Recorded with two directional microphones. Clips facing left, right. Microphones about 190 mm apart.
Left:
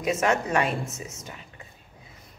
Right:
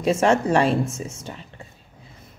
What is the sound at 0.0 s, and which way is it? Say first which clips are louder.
A woman's voice: right 5 dB; 30° right (ahead or behind).